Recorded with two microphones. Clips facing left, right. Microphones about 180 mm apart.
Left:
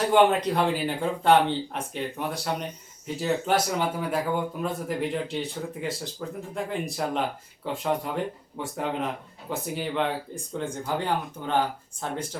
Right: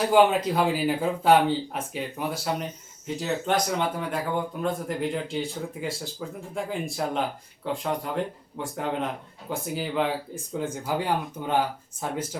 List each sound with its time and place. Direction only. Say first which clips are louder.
0.1 s speech: even; 5° right (ahead or behind)